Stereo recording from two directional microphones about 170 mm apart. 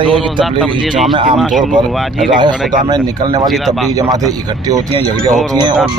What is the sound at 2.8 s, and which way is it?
Speech, 25° right (ahead or behind).